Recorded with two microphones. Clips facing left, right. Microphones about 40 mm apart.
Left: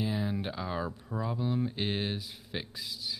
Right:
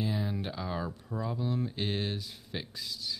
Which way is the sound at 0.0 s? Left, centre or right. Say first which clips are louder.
Left 1 dB; centre.